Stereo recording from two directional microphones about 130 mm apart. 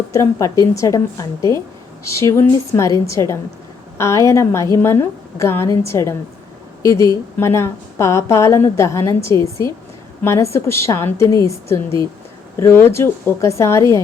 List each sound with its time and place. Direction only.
0.1 s a woman's voice: 25° left (ahead or behind)